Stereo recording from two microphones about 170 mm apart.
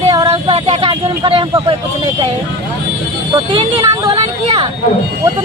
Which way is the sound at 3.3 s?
30° right (ahead or behind).